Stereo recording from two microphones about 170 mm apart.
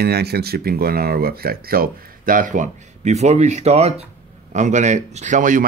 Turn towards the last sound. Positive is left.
turn(degrees=-50)  # may be behind; listen again after turning